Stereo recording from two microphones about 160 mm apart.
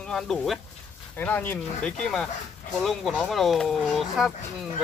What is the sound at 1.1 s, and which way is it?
Speech, 15° left (ahead or behind).